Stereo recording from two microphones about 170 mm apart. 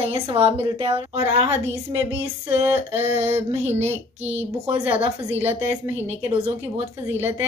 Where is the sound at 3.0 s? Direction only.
40° right (ahead or behind).